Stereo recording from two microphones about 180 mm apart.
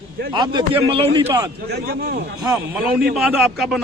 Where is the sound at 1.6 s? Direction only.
60° right (ahead or behind).